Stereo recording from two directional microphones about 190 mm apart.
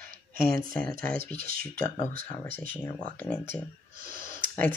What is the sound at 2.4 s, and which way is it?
Speech, 10° left (ahead or behind).